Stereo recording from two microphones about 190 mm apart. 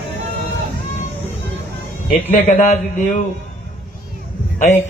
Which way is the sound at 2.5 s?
35° left (ahead or behind).